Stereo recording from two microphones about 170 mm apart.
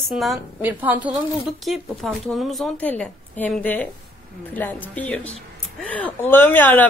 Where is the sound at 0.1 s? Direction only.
Centre (ahead or behind).